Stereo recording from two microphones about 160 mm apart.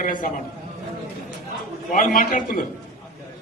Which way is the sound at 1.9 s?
60° left (ahead or behind).